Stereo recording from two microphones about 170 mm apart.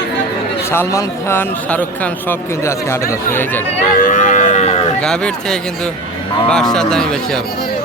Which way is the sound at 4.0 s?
50° left (ahead or behind).